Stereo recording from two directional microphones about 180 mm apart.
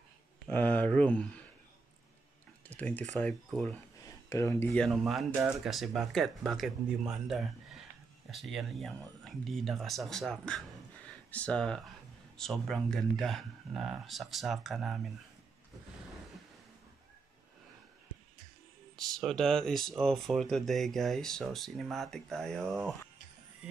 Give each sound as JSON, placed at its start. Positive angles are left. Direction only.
{"t": 0.5, "sound": "speech", "side_deg": 10}
{"t": 2.7, "sound": "speech", "side_deg": 10}
{"t": 4.3, "sound": "speech", "side_deg": 15}
{"t": 4.8, "sound": "speech", "side_deg": 0}
{"t": 18.9, "sound": "speech", "side_deg": 0}